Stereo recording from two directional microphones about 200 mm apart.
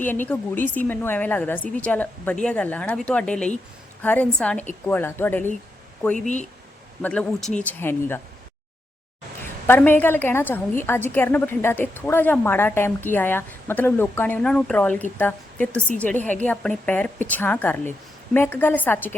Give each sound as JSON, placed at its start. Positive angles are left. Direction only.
{"t": 0.0, "sound": "a woman's voice", "side_deg": 10}
{"t": 6.2, "sound": "speech", "side_deg": 35}
{"t": 7.0, "sound": "a woman's voice", "side_deg": 5}
{"t": 9.6, "sound": "a woman's voice", "side_deg": 10}